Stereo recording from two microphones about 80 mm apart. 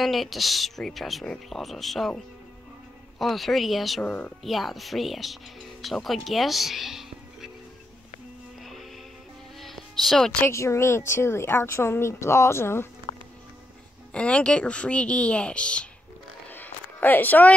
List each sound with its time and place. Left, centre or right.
0.0 s speech: centre
4.0 s speech: left
4.4 s speech: centre
9.6 s music: centre
10.5 s a woman's voice: left
14.1 s speech: centre
16.4 s a sound: left